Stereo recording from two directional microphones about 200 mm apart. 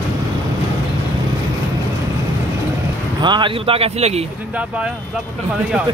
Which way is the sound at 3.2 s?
25° right (ahead or behind).